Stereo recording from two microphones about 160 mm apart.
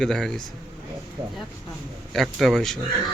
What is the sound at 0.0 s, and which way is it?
Speech, 5° left (ahead or behind).